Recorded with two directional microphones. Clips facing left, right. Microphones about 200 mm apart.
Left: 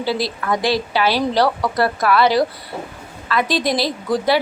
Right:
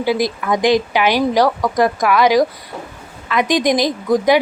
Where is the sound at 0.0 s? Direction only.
15° right (ahead or behind).